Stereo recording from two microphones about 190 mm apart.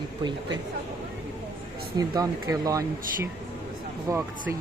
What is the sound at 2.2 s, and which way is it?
Speech, 20° right (ahead or behind).